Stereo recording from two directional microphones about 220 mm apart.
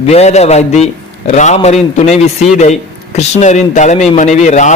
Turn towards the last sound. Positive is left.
turn(degrees=30)  # may be behind; listen again after turning